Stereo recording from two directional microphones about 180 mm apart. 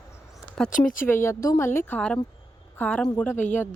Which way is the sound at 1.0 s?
15° left (ahead or behind).